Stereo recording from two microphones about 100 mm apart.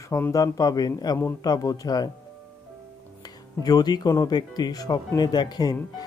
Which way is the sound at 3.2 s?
40° left (ahead or behind).